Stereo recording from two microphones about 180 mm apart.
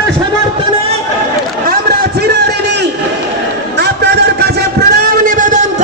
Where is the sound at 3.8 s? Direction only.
65° right (ahead or behind); by 5.6 s 45° right (ahead or behind).